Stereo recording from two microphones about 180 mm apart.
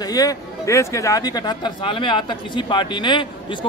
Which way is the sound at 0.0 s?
20° left (ahead or behind).